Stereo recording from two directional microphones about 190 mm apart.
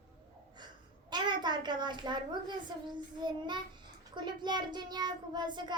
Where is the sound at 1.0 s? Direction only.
25° right (ahead or behind).